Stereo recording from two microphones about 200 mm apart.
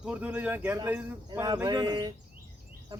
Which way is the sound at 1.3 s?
20° right (ahead or behind).